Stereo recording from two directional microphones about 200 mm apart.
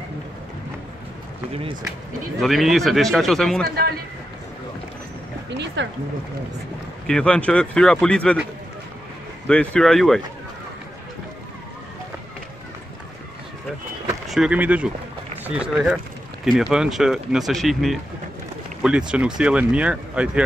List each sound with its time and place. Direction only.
2.4 s speech: centre (ahead or behind)
3.6 s a man's voice: 50° right (ahead or behind)
5.5 s speech: 60° right (ahead or behind)
7.1 s speech: 5° left (ahead or behind)
9.5 s speech: 5° left (ahead or behind)
14.2 s speech: centre (ahead or behind)